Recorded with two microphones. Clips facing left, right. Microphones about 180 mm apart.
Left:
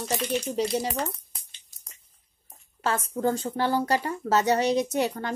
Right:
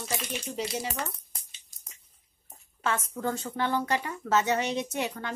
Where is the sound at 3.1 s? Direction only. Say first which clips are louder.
Left 6 dB; 35° left (ahead or behind).